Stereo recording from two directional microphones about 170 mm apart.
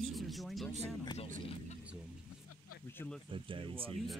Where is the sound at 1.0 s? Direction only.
25° left (ahead or behind).